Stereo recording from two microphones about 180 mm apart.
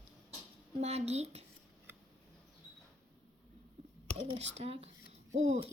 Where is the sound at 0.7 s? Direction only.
35° right (ahead or behind).